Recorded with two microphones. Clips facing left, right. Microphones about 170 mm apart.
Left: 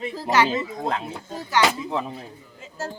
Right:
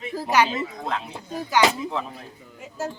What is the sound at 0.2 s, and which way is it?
Speech, 10° right (ahead or behind).